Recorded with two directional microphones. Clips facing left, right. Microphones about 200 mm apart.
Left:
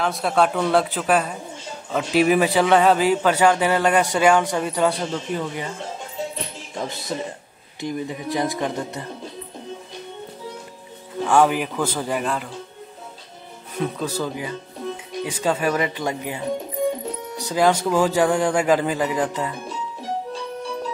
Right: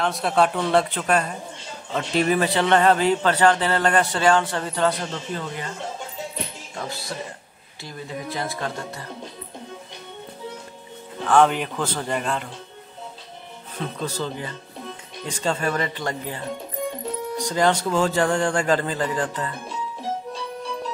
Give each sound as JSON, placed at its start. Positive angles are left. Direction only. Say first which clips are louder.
{"t": 0.0, "sound": "a man's voice", "louder": "left 1 dB", "side_deg": 0}
{"t": 6.8, "sound": "a man's voice", "louder": "left 4 dB", "side_deg": 20}
{"t": 11.2, "sound": "a man's voice", "louder": "even", "side_deg": 5}
{"t": 13.7, "sound": "a man's voice", "louder": "left 4 dB", "side_deg": 10}